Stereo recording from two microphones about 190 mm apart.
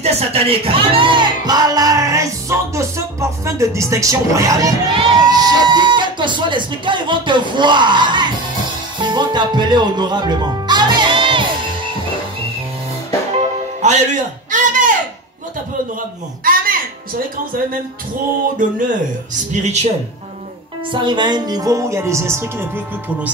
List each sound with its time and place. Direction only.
0.0 s speech: 35° right (ahead or behind)
8.9 s music: 25° right (ahead or behind)
13.4 s music: 40° right (ahead or behind)
16.4 s a sound: 50° right (ahead or behind)
19.6 s a man's voice: 35° right (ahead or behind)
20.9 s speech: 25° right (ahead or behind)